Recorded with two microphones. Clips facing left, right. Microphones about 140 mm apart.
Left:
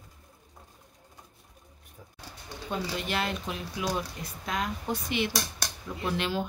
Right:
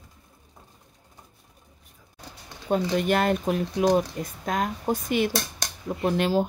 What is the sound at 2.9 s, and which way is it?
Speech, 50° right (ahead or behind).